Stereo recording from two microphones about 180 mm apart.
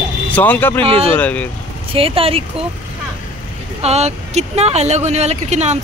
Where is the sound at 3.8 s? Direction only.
35° right (ahead or behind).